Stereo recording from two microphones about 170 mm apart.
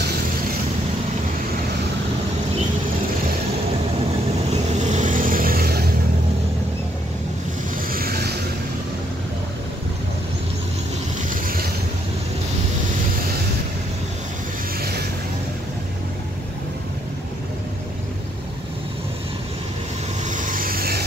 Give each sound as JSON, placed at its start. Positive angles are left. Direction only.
{"t": 4.7, "sound": "vehicle", "side_deg": -45}
{"t": 7.9, "sound": "vehicle", "side_deg": -65}
{"t": 11.2, "sound": "vehicle", "side_deg": -60}
{"t": 14.8, "sound": "vehicle", "side_deg": -70}
{"t": 20.2, "sound": "vehicle", "side_deg": -50}